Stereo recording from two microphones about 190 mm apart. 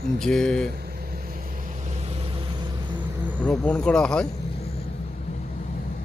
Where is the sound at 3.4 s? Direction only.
5° left (ahead or behind).